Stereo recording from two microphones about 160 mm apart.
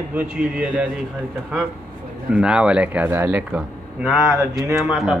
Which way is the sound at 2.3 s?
5° right (ahead or behind).